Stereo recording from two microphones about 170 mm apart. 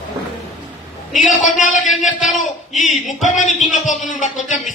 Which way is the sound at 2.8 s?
45° left (ahead or behind).